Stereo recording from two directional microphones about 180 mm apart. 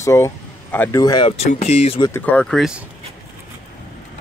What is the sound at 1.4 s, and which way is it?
Speech, 35° left (ahead or behind).